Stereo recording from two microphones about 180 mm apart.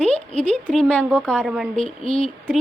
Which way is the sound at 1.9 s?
30° left (ahead or behind).